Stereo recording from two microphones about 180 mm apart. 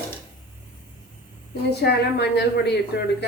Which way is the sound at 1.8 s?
65° left (ahead or behind).